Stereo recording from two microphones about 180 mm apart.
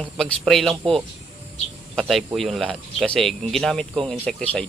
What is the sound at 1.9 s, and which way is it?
A man's voice, centre (ahead or behind).